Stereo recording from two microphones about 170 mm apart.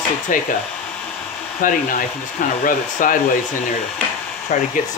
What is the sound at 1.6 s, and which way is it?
Speech, 50° left (ahead or behind).